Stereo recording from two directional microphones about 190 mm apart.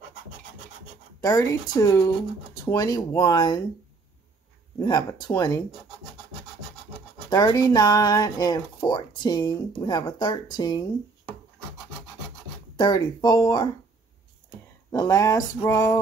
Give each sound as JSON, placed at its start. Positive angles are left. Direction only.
{"t": 1.2, "sound": "a sound", "side_deg": 15}
{"t": 2.6, "sound": "speech", "side_deg": 20}
{"t": 4.7, "sound": "speech", "side_deg": 20}
{"t": 7.2, "sound": "speech", "side_deg": 20}
{"t": 12.7, "sound": "speech", "side_deg": 20}
{"t": 14.9, "sound": "a sound", "side_deg": 15}